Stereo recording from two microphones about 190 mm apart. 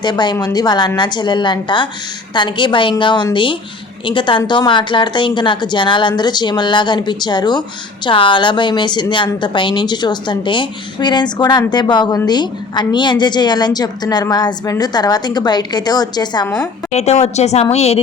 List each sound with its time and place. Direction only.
0.0 s a woman's voice: 20° left (ahead or behind)
16.9 s a woman's voice: 35° left (ahead or behind)